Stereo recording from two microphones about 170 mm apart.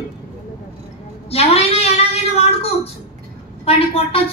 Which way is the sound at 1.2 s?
35° left (ahead or behind).